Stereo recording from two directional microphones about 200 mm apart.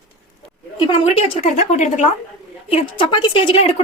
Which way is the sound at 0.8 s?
25° left (ahead or behind).